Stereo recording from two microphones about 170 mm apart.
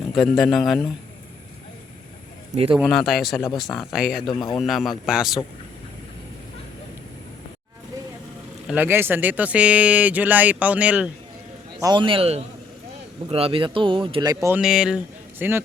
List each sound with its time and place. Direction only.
0.3 s a man's voice: centre (ahead or behind)
2.7 s a man's voice: centre (ahead or behind)
4.3 s a man's voice: 25° left (ahead or behind)
4.5 s a man's voice: centre (ahead or behind)
8.6 s speech: 10° right (ahead or behind)
11.8 s speech: 25° right (ahead or behind)
14.5 s speech: 5° right (ahead or behind)